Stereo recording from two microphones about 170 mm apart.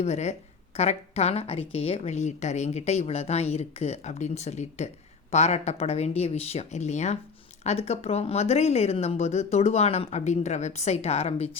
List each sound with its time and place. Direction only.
0.0 s a woman's voice: 40° left (ahead or behind)